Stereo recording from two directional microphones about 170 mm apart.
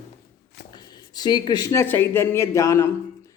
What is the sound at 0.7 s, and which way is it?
Speech, 25° left (ahead or behind).